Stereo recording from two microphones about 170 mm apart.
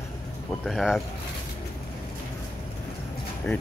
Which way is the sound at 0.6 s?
Centre (ahead or behind).